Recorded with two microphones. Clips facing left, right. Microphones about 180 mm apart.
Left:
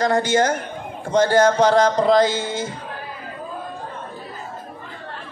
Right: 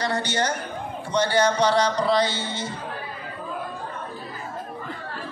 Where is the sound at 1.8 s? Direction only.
90° left.